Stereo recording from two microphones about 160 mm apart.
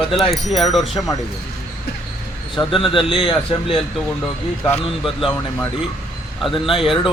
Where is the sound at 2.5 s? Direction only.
35° left (ahead or behind).